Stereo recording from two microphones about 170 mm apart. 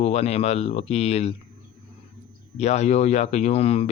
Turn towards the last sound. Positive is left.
turn(degrees=35)  # may be behind; listen again after turning